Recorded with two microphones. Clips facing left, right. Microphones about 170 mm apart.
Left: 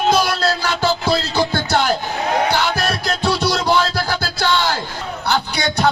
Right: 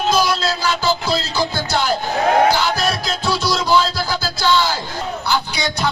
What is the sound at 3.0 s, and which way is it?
A man's voice, 65° left (ahead or behind).